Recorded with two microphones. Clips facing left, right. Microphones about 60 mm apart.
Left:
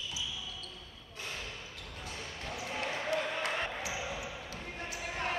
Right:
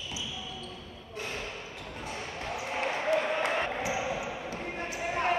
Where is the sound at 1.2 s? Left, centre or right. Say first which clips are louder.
Right 5 dB; right.